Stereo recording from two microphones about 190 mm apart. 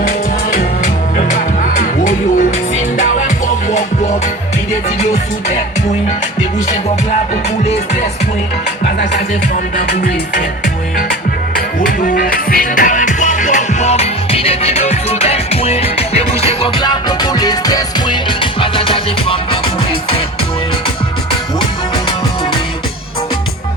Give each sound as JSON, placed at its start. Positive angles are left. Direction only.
{"t": 1.2, "sound": "music", "side_deg": 45}
{"t": 9.7, "sound": "music", "side_deg": 45}